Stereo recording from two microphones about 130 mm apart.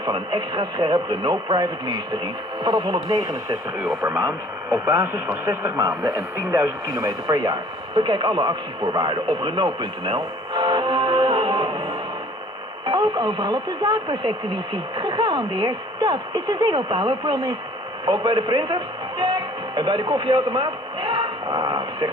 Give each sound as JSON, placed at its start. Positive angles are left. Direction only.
{"t": 0.0, "sound": "speech", "side_deg": -35}
{"t": 4.6, "sound": "speech", "side_deg": -15}
{"t": 12.8, "sound": "speech", "side_deg": -35}